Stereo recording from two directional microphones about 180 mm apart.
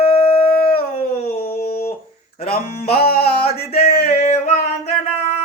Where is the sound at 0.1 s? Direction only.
30° left (ahead or behind).